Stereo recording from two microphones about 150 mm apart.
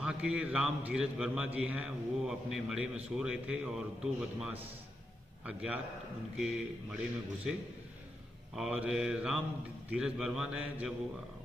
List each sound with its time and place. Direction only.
0.0 s a man's voice: 5° right (ahead or behind)
8.5 s a man's voice: 5° right (ahead or behind)